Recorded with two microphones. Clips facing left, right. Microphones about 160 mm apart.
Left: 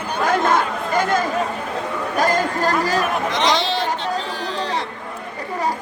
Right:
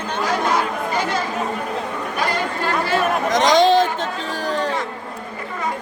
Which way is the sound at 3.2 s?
45° right (ahead or behind).